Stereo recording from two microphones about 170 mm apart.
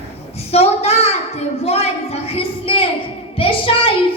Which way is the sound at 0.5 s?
35° left (ahead or behind).